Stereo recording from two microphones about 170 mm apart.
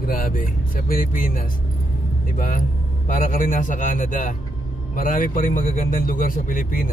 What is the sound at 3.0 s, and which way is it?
A man's voice, 50° left (ahead or behind).